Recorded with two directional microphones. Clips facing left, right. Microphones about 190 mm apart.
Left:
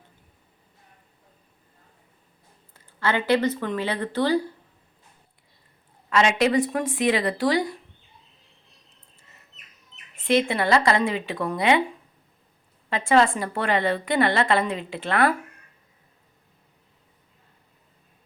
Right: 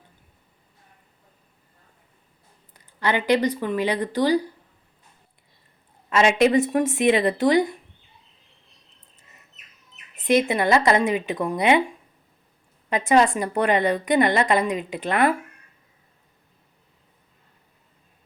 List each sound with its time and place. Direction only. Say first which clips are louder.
2.7 s a woman's voice: right 1 dB; 15° right (ahead or behind)
6.1 s speech: right 3 dB; 20° right (ahead or behind)
10.2 s a woman's voice: right 2 dB; 20° right (ahead or behind)